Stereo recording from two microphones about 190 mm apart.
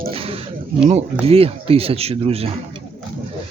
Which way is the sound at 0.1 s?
30° right (ahead or behind).